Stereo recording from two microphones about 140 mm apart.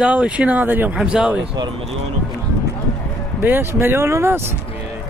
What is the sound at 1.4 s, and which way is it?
Speech, 40° right (ahead or behind).